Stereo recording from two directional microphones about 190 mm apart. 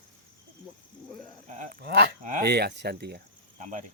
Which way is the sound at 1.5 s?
40° right (ahead or behind).